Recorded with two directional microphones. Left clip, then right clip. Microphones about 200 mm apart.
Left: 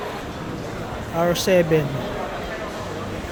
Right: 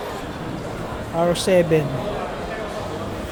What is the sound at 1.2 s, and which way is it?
Speech, centre (ahead or behind).